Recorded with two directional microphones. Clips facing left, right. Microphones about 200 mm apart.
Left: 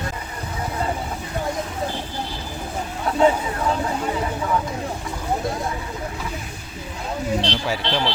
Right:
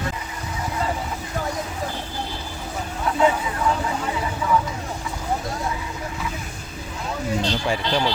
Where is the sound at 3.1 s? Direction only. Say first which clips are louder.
Left 3 dB; 35° left (ahead or behind).